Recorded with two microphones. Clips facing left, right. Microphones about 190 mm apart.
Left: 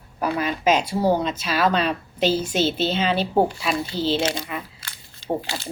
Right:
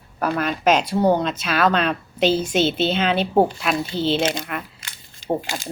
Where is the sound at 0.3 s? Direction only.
5° left (ahead or behind).